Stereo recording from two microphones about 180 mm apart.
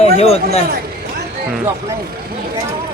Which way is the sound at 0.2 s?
35° left (ahead or behind).